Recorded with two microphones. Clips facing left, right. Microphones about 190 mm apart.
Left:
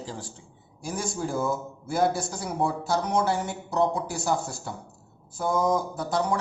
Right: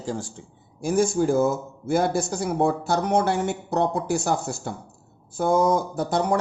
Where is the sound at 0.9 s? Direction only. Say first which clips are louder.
Right 10 dB; 60° right (ahead or behind).